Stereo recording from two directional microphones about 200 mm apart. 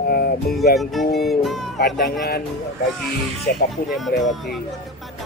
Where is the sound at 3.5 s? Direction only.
50° left (ahead or behind).